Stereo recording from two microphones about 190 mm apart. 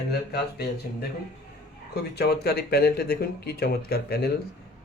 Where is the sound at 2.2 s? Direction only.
60° left (ahead or behind).